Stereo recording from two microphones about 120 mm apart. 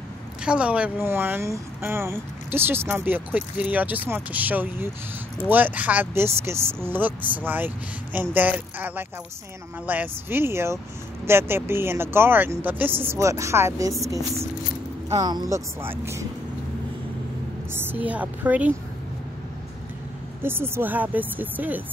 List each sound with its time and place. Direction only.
0.5 s speech: 10° right (ahead or behind)
17.7 s speech: 15° right (ahead or behind)
20.4 s speech: 20° right (ahead or behind)